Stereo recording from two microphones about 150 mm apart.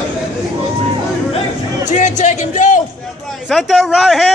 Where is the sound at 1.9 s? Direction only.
55° left (ahead or behind).